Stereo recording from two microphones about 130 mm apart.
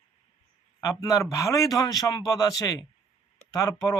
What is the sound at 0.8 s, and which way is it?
Speech, 25° left (ahead or behind).